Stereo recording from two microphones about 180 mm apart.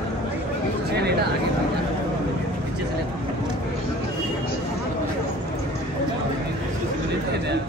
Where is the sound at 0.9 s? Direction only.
65° right (ahead or behind).